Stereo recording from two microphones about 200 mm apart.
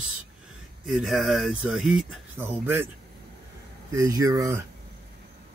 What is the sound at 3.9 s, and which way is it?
Speech, 15° right (ahead or behind).